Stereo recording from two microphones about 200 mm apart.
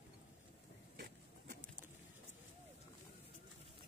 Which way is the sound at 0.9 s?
50° right (ahead or behind).